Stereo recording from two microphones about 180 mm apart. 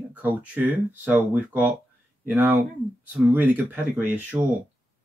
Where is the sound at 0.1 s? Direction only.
10° right (ahead or behind).